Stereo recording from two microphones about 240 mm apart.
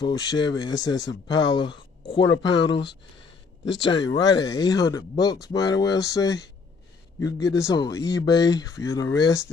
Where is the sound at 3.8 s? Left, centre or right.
Centre.